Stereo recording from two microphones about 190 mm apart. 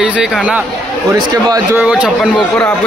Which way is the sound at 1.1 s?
15° right (ahead or behind).